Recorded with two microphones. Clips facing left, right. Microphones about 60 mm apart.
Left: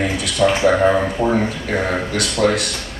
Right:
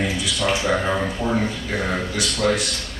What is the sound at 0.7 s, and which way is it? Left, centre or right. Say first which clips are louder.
Speech: left 7 dB; centre.